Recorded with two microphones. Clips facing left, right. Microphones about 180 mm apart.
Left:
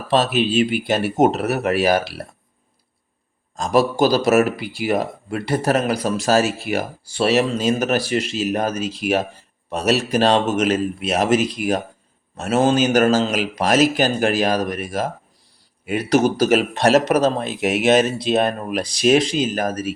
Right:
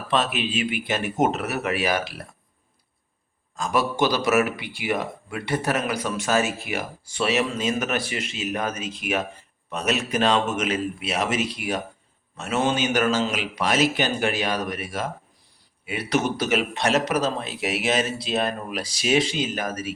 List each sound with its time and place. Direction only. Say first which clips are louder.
0.1 s a man's voice: left 7 dB; 35° left (ahead or behind)
3.5 s a man's voice: left 6 dB; 40° left (ahead or behind)